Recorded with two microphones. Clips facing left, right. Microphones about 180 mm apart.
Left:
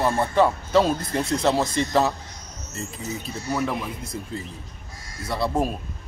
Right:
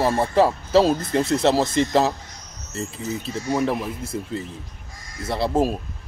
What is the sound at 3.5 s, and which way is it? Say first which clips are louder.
Speech: right 3 dB; 30° right (ahead or behind).